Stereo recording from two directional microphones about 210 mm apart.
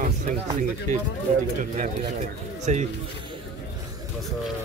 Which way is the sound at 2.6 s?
35° right (ahead or behind).